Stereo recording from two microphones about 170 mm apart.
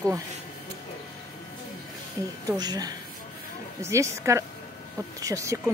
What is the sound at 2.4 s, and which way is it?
Speech, 25° right (ahead or behind).